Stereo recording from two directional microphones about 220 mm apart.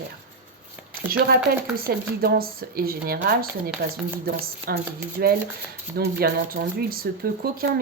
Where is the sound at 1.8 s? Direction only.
45° right (ahead or behind).